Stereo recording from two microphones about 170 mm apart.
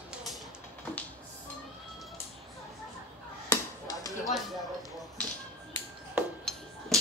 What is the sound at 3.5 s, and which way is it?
Chop, 20° left (ahead or behind).